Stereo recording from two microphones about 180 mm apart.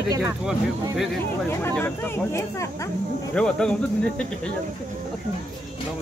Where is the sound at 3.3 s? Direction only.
5° left (ahead or behind).